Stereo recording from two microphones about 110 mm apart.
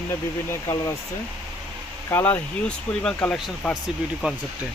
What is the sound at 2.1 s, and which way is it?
Speech, 20° left (ahead or behind).